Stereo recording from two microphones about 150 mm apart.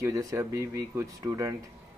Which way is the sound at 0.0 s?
20° right (ahead or behind).